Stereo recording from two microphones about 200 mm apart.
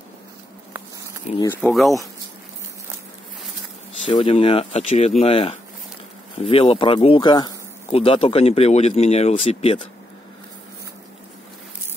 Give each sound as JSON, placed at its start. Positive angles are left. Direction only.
{"t": 1.3, "sound": "speech", "side_deg": 35}
{"t": 1.6, "sound": "speech", "side_deg": 0}
{"t": 4.1, "sound": "speech", "side_deg": 25}